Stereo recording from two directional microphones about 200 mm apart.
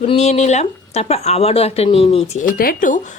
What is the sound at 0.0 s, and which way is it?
Speech, 30° left (ahead or behind).